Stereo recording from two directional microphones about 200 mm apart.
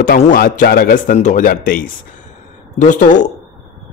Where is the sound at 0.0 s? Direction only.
45° left (ahead or behind).